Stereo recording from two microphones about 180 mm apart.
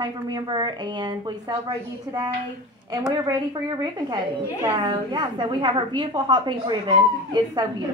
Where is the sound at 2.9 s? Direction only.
20° right (ahead or behind).